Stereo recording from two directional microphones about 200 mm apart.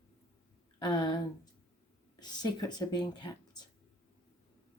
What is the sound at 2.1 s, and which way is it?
Speech, 20° left (ahead or behind).